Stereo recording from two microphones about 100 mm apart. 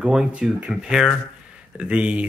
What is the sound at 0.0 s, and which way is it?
Speech, 10° right (ahead or behind).